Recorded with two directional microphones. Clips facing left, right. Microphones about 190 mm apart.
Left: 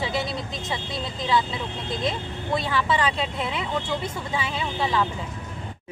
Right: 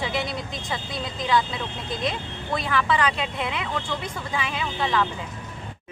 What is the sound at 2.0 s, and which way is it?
Speech, 25° left (ahead or behind).